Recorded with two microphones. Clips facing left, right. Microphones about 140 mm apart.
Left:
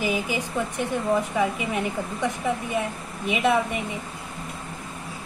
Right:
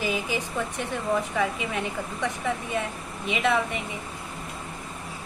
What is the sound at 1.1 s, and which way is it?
Speech, 20° left (ahead or behind).